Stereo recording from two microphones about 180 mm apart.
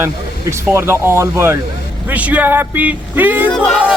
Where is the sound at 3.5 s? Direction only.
5° left (ahead or behind).